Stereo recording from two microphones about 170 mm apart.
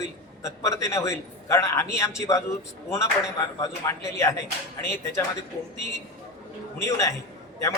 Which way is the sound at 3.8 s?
20° left (ahead or behind).